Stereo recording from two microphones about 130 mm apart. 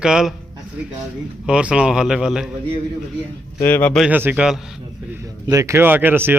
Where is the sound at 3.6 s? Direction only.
15° left (ahead or behind).